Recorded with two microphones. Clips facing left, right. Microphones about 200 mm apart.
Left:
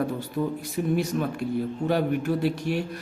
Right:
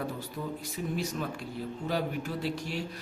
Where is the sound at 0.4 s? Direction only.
60° left (ahead or behind).